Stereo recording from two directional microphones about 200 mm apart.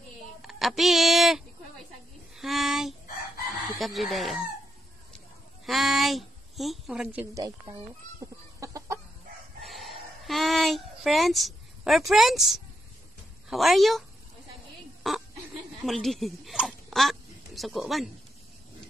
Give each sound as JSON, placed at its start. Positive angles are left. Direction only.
{"t": 0.4, "sound": "a sound", "side_deg": 0}
{"t": 3.7, "sound": "speech", "side_deg": 0}
{"t": 5.7, "sound": "a woman's voice", "side_deg": 0}
{"t": 8.2, "sound": "chicken", "side_deg": -15}
{"t": 9.6, "sound": "a sound", "side_deg": 0}
{"t": 13.5, "sound": "speech", "side_deg": 0}
{"t": 15.0, "sound": "speech", "side_deg": 0}